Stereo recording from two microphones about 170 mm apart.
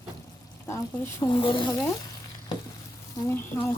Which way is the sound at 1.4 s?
30° left (ahead or behind).